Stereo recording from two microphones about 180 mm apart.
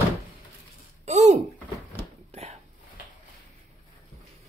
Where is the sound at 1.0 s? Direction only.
40° right (ahead or behind).